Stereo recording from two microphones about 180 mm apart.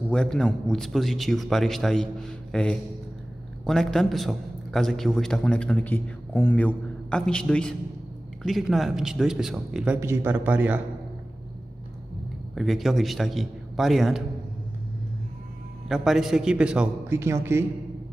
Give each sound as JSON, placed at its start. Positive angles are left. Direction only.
{"t": 0.1, "sound": "a man's voice", "side_deg": 5}
{"t": 9.9, "sound": "a man's voice", "side_deg": -15}
{"t": 12.5, "sound": "a man's voice", "side_deg": 0}
{"t": 15.9, "sound": "a man's voice", "side_deg": 0}